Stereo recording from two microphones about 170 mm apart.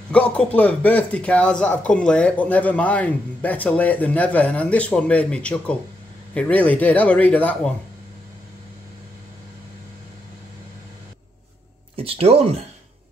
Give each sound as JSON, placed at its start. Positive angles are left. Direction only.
{"t": 0.1, "sound": "a man's voice", "side_deg": 5}
{"t": 12.0, "sound": "speech", "side_deg": -35}